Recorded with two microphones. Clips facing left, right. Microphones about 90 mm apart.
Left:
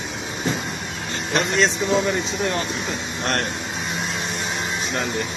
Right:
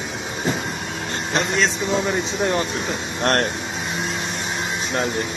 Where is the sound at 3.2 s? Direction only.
50° right (ahead or behind).